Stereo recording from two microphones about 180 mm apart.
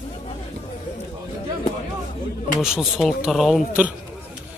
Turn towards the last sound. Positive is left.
turn(degrees=-5)  # may be behind; listen again after turning